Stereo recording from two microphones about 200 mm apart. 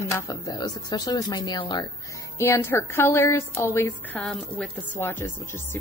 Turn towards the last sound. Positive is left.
turn(degrees=10)  # may be behind; listen again after turning